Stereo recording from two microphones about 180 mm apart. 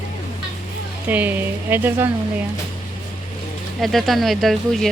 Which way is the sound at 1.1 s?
10° right (ahead or behind).